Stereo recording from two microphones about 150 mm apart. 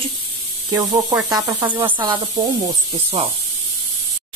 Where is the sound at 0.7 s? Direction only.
25° right (ahead or behind).